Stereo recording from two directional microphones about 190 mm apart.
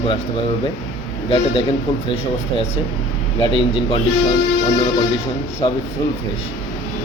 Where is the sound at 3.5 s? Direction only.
30° left (ahead or behind).